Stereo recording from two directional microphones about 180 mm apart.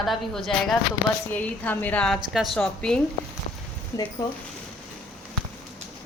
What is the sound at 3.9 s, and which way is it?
Speech, 15° left (ahead or behind).